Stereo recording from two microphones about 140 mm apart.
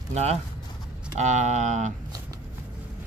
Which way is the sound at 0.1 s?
50° right (ahead or behind).